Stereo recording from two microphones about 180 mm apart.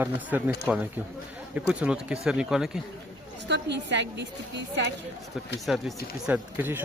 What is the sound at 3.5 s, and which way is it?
Speech, 75° right (ahead or behind).